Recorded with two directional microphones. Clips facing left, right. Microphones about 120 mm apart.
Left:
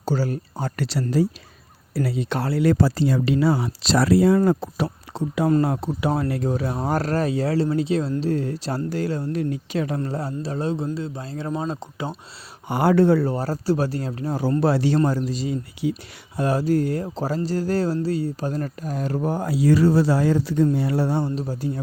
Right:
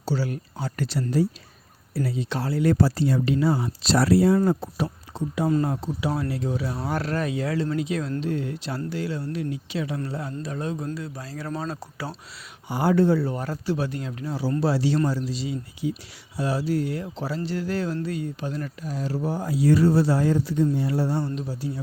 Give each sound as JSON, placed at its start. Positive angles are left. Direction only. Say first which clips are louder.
{"t": 0.0, "sound": "speech", "louder": "left 3 dB", "side_deg": 45}
{"t": 0.8, "sound": "speech", "louder": "left 2 dB", "side_deg": 90}
{"t": 2.3, "sound": "speech", "louder": "left 3 dB", "side_deg": 65}
{"t": 5.6, "sound": "speech", "louder": "left 4 dB", "side_deg": 60}
{"t": 12.6, "sound": "speech", "louder": "left 3 dB", "side_deg": 65}
{"t": 13.3, "sound": "speech", "louder": "left 5 dB", "side_deg": 35}
{"t": 15.8, "sound": "speech", "louder": "left 3 dB", "side_deg": 75}
{"t": 16.4, "sound": "speech", "louder": "left 4 dB", "side_deg": 50}
{"t": 19.5, "sound": "speech", "louder": "left 1 dB", "side_deg": 90}
{"t": 20.7, "sound": "speech", "louder": "left 3 dB", "side_deg": 70}
{"t": 21.3, "sound": "speech", "louder": "left 4 dB", "side_deg": 45}